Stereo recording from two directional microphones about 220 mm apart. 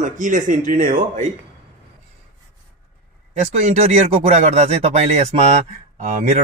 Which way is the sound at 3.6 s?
30° right (ahead or behind).